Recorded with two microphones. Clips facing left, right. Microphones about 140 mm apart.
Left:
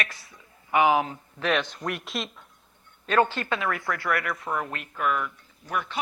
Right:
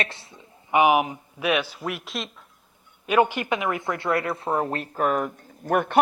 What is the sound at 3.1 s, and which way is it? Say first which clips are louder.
Speech: right 2 dB; 15° right (ahead or behind).